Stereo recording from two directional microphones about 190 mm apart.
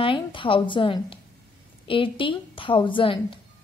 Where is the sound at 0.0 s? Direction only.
25° left (ahead or behind).